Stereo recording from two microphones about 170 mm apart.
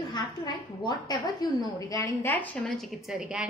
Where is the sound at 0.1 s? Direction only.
25° left (ahead or behind).